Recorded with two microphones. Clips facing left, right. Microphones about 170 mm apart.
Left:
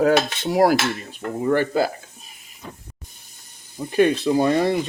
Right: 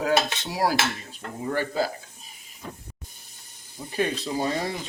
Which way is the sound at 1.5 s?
65° left (ahead or behind).